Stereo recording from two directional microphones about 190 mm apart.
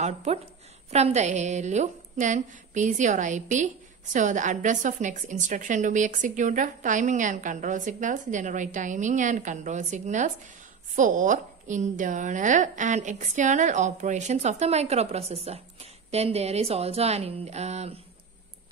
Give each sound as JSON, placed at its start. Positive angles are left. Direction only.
{"t": 0.0, "sound": "a woman's voice", "side_deg": -35}